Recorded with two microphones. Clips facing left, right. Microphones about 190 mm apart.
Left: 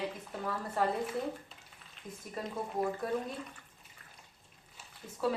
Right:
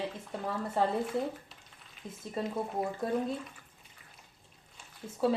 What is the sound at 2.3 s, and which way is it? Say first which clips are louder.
Speech: right 3 dB; 25° right (ahead or behind).